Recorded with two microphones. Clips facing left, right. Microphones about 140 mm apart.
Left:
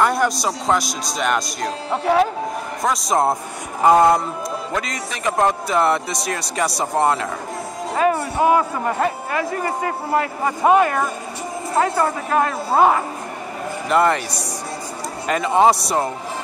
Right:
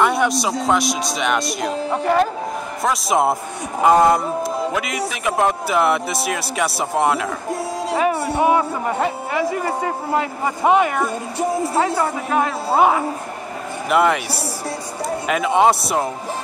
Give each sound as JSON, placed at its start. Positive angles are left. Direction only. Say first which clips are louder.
{"t": 0.0, "sound": "speech", "louder": "right 1 dB", "side_deg": 0}
{"t": 10.1, "sound": "speech", "louder": "left 2 dB", "side_deg": -15}
{"t": 15.2, "sound": "speech", "louder": "left 1 dB", "side_deg": -5}